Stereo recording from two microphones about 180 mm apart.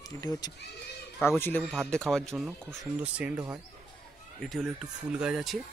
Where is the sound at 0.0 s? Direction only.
20° left (ahead or behind).